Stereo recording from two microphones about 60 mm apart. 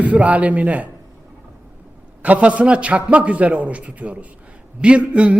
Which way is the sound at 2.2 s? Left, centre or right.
Right.